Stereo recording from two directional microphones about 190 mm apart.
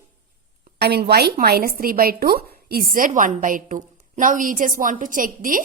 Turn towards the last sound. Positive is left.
turn(degrees=-45)  # may be behind; listen again after turning